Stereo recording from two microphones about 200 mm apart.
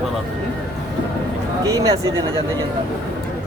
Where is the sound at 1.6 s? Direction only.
15° right (ahead or behind).